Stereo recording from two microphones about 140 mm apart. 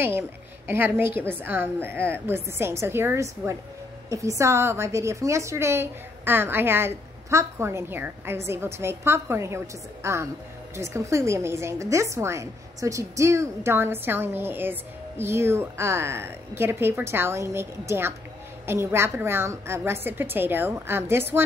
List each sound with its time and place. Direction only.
0.7 s a woman's voice: 15° right (ahead or behind)